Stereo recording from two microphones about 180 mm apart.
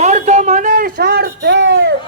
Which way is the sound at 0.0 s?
40° right (ahead or behind).